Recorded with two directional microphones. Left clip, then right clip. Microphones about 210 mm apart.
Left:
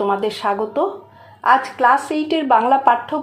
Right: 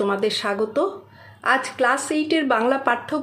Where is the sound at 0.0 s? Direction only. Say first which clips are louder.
Left 3 dB; 25° right (ahead or behind).